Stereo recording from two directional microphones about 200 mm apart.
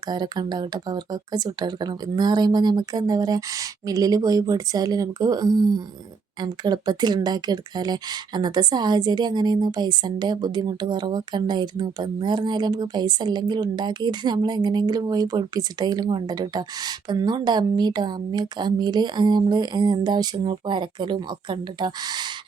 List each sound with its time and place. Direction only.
0.1 s speech: 20° right (ahead or behind)